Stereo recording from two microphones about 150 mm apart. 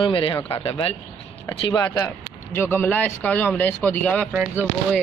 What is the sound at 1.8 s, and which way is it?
Speech, 20° left (ahead or behind).